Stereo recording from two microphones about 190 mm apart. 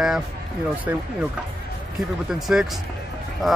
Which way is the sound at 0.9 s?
10° right (ahead or behind).